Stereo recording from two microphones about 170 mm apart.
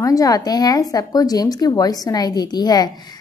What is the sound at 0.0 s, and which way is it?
A woman's voice, 20° left (ahead or behind).